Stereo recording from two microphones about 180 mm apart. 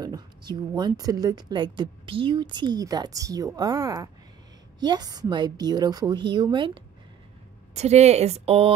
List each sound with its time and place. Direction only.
0.0 s a woman's voice: 25° right (ahead or behind)
7.7 s a woman's voice: 40° right (ahead or behind)